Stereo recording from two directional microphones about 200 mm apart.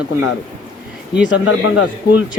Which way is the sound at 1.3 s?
70° left (ahead or behind).